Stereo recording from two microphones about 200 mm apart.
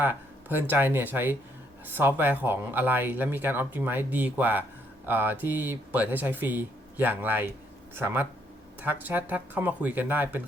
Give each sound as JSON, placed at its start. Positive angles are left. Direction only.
{"t": 0.0, "sound": "speech", "side_deg": -10}